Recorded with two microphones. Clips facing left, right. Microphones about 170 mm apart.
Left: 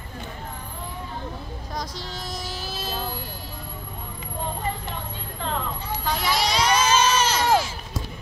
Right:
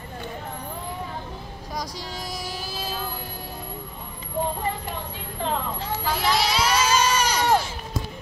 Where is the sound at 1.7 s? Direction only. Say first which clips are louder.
Right 1 dB; 10° right (ahead or behind).